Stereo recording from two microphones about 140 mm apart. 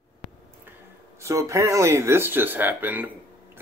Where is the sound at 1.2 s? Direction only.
20° right (ahead or behind).